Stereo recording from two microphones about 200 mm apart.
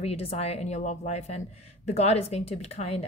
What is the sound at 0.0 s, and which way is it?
Speech, 30° left (ahead or behind).